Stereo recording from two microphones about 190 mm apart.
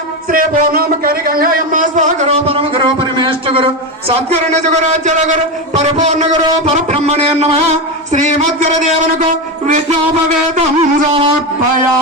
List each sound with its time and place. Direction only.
0.3 s a sound: 50° right (ahead or behind); by 3.7 s 30° right (ahead or behind)
5.0 s a man's voice: 40° right (ahead or behind)
10.5 s a man's voice: 30° right (ahead or behind)